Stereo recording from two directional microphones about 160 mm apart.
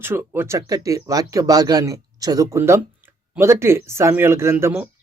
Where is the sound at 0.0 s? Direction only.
15° right (ahead or behind).